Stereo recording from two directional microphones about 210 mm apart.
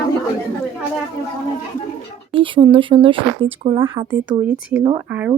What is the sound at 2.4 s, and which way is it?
Speech, 25° right (ahead or behind).